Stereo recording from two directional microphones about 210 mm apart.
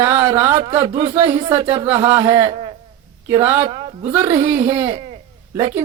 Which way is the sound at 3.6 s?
30° right (ahead or behind).